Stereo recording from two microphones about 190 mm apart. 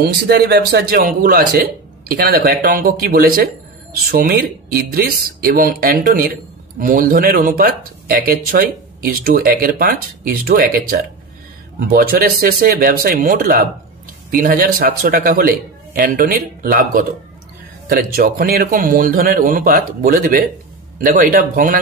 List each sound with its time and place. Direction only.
0.0 s speech: 60° right (ahead or behind)